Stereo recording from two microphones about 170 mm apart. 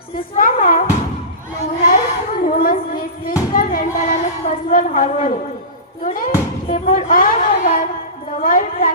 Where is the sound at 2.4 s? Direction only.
55° left (ahead or behind).